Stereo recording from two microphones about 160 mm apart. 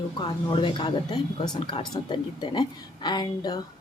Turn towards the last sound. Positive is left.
turn(degrees=25)  # may be behind; listen again after turning